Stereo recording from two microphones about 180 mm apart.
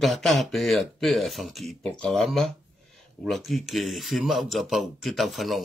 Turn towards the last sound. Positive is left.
turn(degrees=0)  # may be behind; listen again after turning